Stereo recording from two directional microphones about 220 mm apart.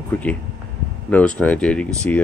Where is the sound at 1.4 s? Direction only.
5° left (ahead or behind).